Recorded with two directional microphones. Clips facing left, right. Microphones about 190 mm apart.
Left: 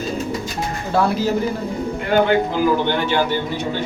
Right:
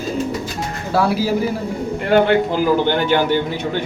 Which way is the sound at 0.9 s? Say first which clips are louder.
Right 1 dB; 5° right (ahead or behind).